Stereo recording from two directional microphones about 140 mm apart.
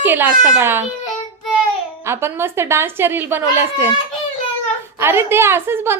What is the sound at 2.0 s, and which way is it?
A woman's voice, 15° right (ahead or behind).